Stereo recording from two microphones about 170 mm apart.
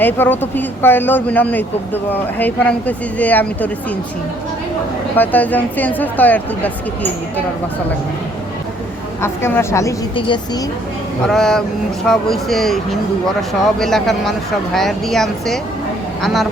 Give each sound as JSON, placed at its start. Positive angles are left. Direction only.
{"t": 0.0, "sound": "speech", "side_deg": 10}
{"t": 5.1, "sound": "speech", "side_deg": 10}
{"t": 9.2, "sound": "speech", "side_deg": 15}
{"t": 10.2, "sound": "speech", "side_deg": 30}
{"t": 11.3, "sound": "speech", "side_deg": 5}